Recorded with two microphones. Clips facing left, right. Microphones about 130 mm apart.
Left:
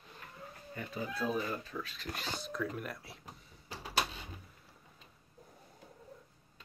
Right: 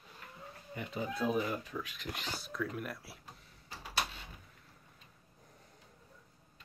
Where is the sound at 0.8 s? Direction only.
20° right (ahead or behind).